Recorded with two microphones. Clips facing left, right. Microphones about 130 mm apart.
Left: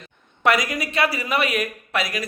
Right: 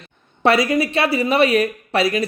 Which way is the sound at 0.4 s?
30° right (ahead or behind).